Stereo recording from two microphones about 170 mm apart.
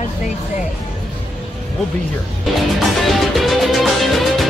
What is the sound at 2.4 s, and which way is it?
Music, centre (ahead or behind).